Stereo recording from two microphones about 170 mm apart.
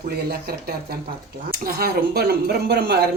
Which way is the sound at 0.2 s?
65° right (ahead or behind).